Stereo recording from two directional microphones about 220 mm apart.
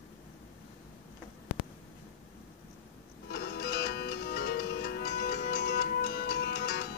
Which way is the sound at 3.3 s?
45° left (ahead or behind).